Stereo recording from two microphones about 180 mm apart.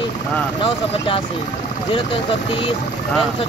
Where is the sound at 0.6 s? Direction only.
30° left (ahead or behind).